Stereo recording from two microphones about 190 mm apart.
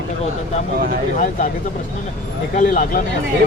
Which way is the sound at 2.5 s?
45° left (ahead or behind).